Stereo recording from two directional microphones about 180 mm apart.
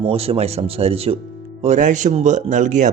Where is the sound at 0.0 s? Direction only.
35° right (ahead or behind).